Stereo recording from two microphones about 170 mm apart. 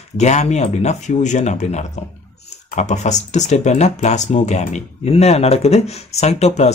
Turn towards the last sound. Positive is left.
turn(degrees=40)  # may be behind; listen again after turning